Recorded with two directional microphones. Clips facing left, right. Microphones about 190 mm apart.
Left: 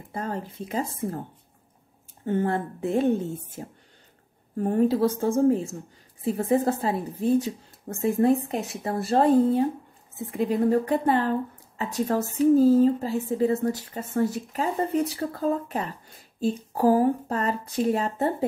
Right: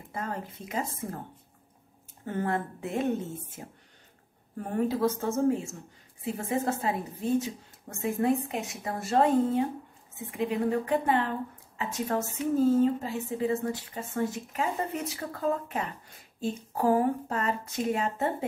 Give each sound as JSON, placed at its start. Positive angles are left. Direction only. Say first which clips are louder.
{"t": 0.1, "sound": "a woman's voice", "louder": "left 4 dB", "side_deg": 30}
{"t": 2.2, "sound": "a woman's voice", "louder": "left 5 dB", "side_deg": 30}
{"t": 16.3, "sound": "a woman's voice", "louder": "left 5 dB", "side_deg": 35}